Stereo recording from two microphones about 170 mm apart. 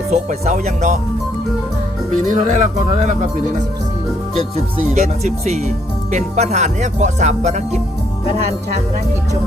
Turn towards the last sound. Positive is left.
turn(degrees=-45)  # may be behind; listen again after turning